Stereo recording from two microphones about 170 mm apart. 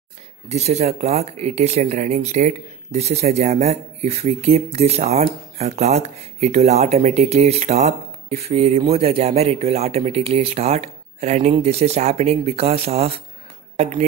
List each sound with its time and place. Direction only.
0.5 s speech: 40° right (ahead or behind)